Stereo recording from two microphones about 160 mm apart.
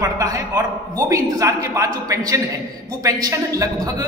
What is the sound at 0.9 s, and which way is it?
A man's voice, 20° right (ahead or behind).